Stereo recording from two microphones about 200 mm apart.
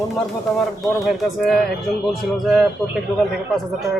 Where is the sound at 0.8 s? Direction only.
Centre (ahead or behind).